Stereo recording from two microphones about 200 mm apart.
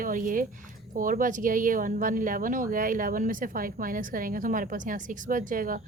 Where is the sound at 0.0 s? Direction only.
40° right (ahead or behind).